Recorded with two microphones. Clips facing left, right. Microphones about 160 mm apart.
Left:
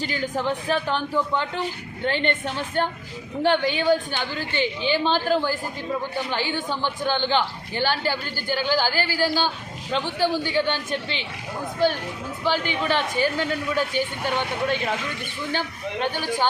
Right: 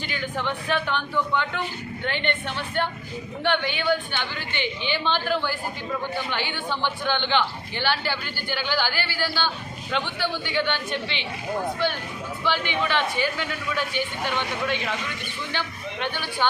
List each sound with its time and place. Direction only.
0.0 s a man's voice: 35° left (ahead or behind)